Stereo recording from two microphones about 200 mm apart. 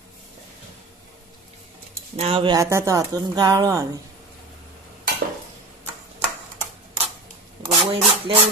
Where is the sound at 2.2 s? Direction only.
30° right (ahead or behind).